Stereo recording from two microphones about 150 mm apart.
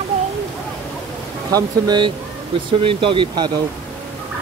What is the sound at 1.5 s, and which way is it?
Speech, 30° right (ahead or behind).